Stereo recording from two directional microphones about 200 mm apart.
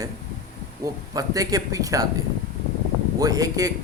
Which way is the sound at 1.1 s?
15° right (ahead or behind).